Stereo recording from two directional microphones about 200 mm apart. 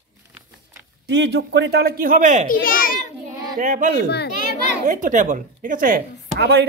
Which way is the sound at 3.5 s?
40° right (ahead or behind).